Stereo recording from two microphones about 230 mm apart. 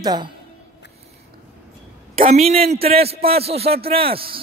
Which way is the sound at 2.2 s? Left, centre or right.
Right.